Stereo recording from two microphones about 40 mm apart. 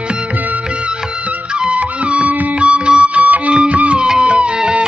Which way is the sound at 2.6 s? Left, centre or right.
Right.